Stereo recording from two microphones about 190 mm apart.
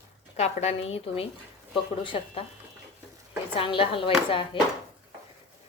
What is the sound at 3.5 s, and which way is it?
Speech, 30° left (ahead or behind).